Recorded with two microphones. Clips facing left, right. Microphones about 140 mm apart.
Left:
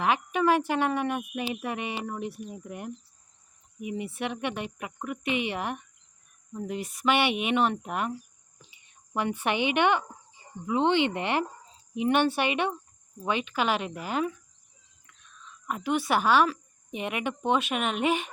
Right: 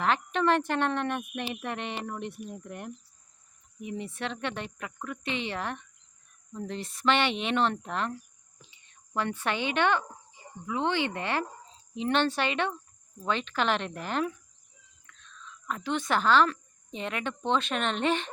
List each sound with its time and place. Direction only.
0.0 s speech: 10° left (ahead or behind)